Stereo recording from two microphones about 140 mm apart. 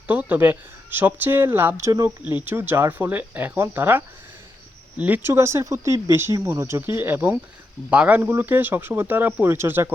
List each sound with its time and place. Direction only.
0.1 s speech: 10° right (ahead or behind)
2.2 s speech: 15° right (ahead or behind)